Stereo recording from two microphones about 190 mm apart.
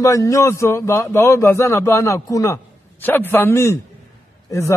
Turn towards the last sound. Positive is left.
turn(degrees=15)  # may be behind; listen again after turning